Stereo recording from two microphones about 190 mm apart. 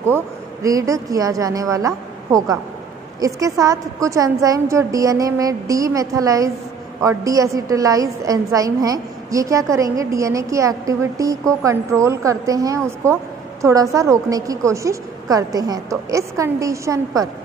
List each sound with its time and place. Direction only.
0.0 s a woman's voice: 15° right (ahead or behind)